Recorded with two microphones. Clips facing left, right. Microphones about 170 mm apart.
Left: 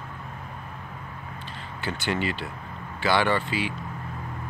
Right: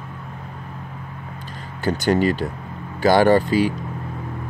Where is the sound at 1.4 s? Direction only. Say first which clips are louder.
Right 9 dB; 40° right (ahead or behind).